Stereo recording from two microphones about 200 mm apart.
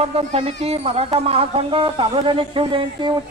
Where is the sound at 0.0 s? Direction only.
30° right (ahead or behind).